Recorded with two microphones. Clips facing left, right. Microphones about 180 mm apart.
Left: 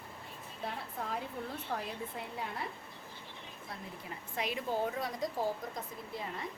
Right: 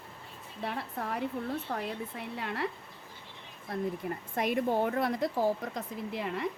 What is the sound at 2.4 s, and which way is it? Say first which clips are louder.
Speech: right 5 dB; 75° right (ahead or behind).